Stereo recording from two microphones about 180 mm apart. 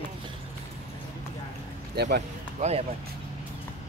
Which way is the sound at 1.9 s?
65° right (ahead or behind).